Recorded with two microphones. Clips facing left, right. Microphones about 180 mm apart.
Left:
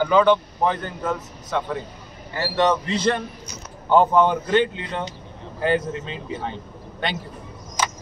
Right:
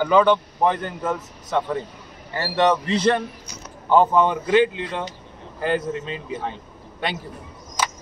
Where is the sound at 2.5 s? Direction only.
30° right (ahead or behind).